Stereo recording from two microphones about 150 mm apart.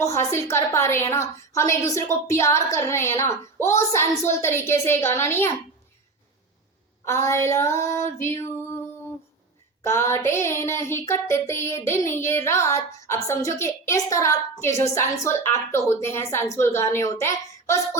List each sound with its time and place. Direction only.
0.0 s a woman's voice: 20° left (ahead or behind)
4.2 s child singing: 20° left (ahead or behind)
7.0 s a woman's voice: 20° left (ahead or behind)
8.2 s music: 15° left (ahead or behind)
9.8 s child singing: 15° left (ahead or behind)